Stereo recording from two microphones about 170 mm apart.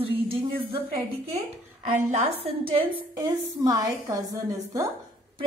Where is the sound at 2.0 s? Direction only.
40° right (ahead or behind).